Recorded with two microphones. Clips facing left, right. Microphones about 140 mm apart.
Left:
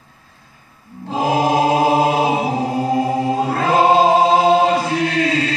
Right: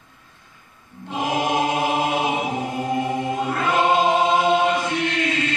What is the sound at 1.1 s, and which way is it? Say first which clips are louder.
Choir: left 6 dB; 35° left (ahead or behind).